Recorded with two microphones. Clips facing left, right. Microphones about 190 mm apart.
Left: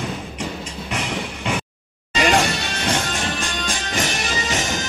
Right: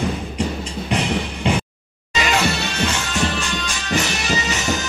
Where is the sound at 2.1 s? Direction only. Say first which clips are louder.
Left 3 dB; 50° left (ahead or behind).